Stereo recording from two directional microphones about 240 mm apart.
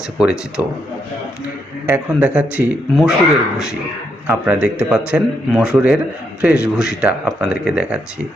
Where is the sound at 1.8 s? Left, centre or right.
Centre.